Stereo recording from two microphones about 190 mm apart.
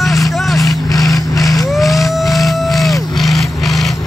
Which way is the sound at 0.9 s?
20° left (ahead or behind).